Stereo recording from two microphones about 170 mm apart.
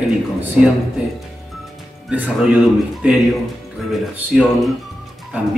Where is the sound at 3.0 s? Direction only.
5° right (ahead or behind).